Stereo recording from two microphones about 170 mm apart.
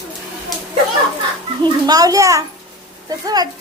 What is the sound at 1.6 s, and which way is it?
A child's voice, 20° right (ahead or behind).